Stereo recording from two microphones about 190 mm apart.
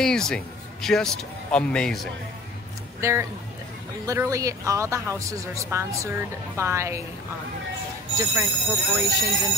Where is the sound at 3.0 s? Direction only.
15° right (ahead or behind).